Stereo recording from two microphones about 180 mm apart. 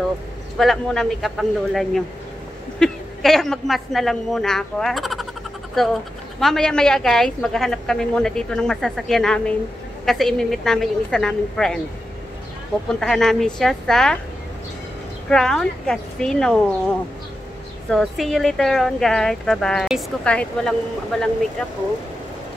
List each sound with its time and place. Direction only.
0.6 s a woman's voice: centre (ahead or behind)
6.4 s a woman's voice: 5° left (ahead or behind)
13.0 s a woman's voice: centre (ahead or behind)
15.2 s a woman's voice: 5° left (ahead or behind)